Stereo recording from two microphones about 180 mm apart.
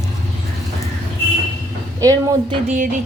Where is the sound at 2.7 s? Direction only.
45° right (ahead or behind).